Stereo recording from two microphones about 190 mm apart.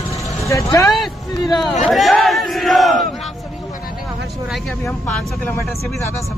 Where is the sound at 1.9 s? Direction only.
Centre (ahead or behind).